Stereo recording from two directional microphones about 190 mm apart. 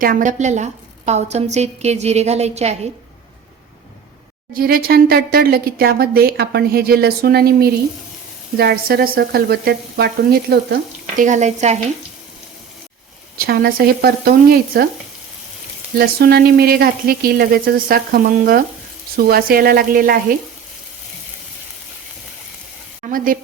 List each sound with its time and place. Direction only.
0.0 s a woman's voice: 45° right (ahead or behind)
4.5 s speech: 50° right (ahead or behind)
8.5 s frying: 55° right (ahead or behind)
11.2 s a woman's voice: 40° right (ahead or behind)
13.4 s speech: 50° right (ahead or behind)
16.0 s speech: 55° right (ahead or behind)
23.0 s speech: 45° right (ahead or behind)